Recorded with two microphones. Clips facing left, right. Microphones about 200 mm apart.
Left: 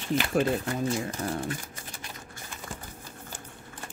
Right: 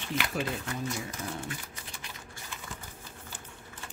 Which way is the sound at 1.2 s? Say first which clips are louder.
Left 6 dB; 45° left (ahead or behind).